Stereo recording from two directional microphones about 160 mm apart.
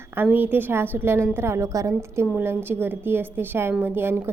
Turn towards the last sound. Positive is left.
turn(degrees=-15)  # may be behind; listen again after turning